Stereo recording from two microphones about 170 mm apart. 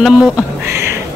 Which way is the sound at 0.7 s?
15° right (ahead or behind).